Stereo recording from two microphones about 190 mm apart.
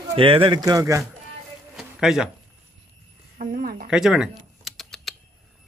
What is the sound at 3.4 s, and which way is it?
Speech, 50° right (ahead or behind).